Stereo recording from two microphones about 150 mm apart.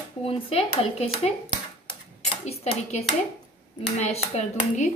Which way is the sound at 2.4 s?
45° left (ahead or behind).